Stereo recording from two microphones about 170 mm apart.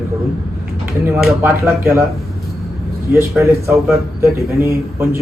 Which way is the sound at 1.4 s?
10° right (ahead or behind).